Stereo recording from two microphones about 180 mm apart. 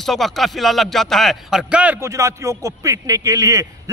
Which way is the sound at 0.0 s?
Centre (ahead or behind).